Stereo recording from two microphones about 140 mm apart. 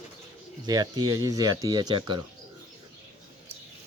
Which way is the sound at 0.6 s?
30° right (ahead or behind).